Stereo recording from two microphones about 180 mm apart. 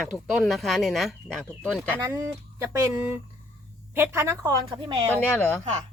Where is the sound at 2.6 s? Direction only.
15° right (ahead or behind).